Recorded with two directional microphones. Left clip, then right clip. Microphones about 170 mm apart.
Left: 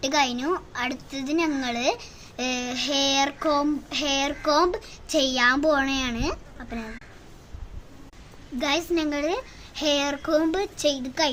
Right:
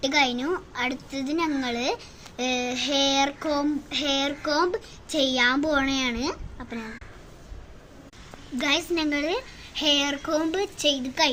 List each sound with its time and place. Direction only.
0.0 s a woman's voice: 20° left (ahead or behind)
8.6 s a child's voice: 10° left (ahead or behind)